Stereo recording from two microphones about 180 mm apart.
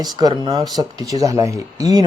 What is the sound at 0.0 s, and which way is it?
Speech, 20° right (ahead or behind).